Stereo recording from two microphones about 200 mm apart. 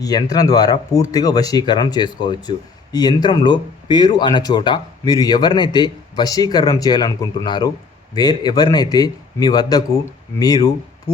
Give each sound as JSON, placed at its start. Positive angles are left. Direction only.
{"t": 0.0, "sound": "speech", "side_deg": 20}